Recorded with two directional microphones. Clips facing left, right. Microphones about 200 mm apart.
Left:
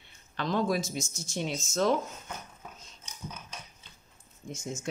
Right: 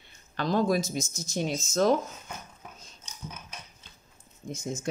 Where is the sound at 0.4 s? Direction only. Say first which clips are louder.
Right 3 dB; 40° right (ahead or behind).